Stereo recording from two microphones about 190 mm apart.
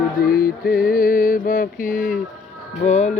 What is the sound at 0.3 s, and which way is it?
Mantra, 50° left (ahead or behind).